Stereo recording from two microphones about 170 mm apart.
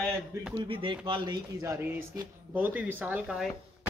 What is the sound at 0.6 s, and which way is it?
Speech, 30° right (ahead or behind).